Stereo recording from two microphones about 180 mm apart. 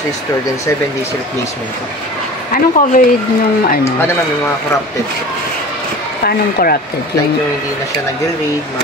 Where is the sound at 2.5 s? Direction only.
50° left (ahead or behind).